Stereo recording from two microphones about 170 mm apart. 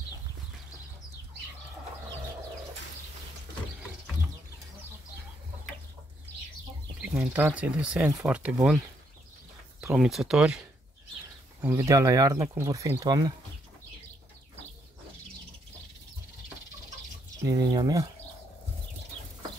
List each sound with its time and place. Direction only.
7.0 s speech: 10° right (ahead or behind)
9.9 s speech: centre (ahead or behind)
11.6 s speech: 15° right (ahead or behind)
17.4 s speech: 20° right (ahead or behind)